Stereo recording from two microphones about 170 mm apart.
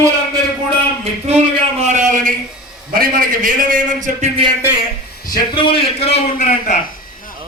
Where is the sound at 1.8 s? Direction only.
45° right (ahead or behind).